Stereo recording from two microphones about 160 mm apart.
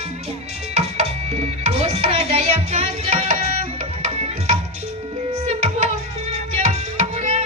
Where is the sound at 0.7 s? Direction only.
40° right (ahead or behind).